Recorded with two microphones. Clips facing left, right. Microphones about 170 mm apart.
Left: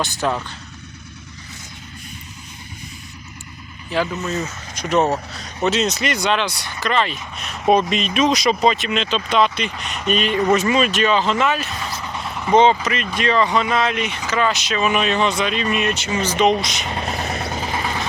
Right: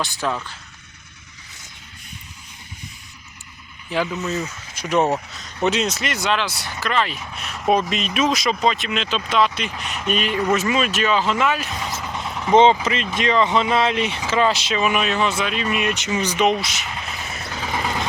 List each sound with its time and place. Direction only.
0.0 s speech: centre (ahead or behind)
3.9 s speech: 15° right (ahead or behind)
12.3 s vehicle: centre (ahead or behind)
12.5 s speech: 20° right (ahead or behind)
14.8 s speech: 10° right (ahead or behind)
16.8 s vehicle: 35° left (ahead or behind)